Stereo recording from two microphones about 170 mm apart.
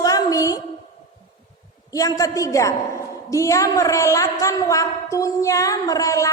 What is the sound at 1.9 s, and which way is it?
A woman's voice, 20° left (ahead or behind).